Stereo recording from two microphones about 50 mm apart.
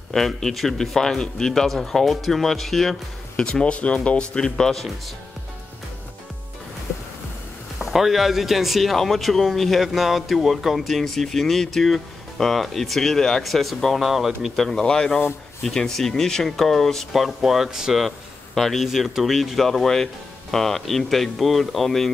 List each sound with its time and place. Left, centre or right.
0.4 s speech: centre
3.3 s speech: centre
4.3 s speech: centre
7.8 s speech: centre
13.9 s speech: centre
14.8 s speech: centre
17.1 s speech: centre